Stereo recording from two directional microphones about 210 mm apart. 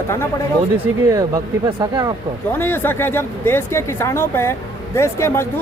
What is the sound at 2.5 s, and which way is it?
Speech, 10° left (ahead or behind).